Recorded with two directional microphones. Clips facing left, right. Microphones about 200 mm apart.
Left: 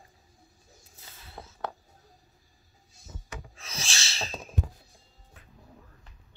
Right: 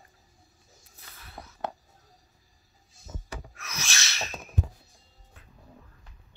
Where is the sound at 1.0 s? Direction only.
25° left (ahead or behind).